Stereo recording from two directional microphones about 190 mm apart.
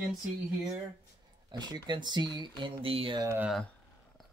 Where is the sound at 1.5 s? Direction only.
25° right (ahead or behind).